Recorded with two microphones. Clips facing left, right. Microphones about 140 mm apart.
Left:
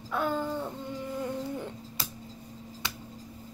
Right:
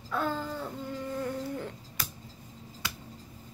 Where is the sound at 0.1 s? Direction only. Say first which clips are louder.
Left 2 dB; 15° left (ahead or behind).